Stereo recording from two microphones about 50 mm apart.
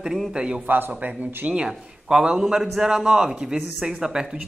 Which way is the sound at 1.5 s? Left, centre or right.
Centre.